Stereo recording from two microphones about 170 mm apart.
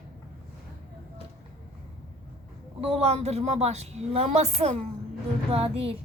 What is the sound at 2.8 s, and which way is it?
A woman's voice, 35° right (ahead or behind).